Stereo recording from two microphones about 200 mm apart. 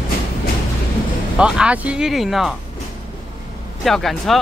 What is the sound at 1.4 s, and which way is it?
Speech, 5° right (ahead or behind).